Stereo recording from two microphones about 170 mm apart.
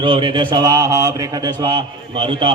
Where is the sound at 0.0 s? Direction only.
30° right (ahead or behind).